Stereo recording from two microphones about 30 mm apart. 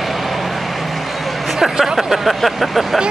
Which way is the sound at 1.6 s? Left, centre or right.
Centre.